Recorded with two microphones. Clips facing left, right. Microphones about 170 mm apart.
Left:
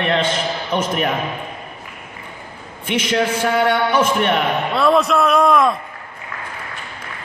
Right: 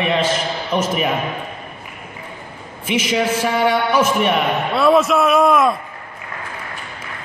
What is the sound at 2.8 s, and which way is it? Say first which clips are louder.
A man's voice: even; 5° right (ahead or behind).